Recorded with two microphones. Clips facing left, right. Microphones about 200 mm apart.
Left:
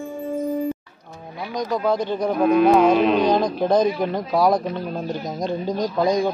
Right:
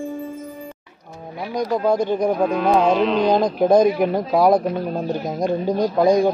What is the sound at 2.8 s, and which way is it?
Music, 55° left (ahead or behind).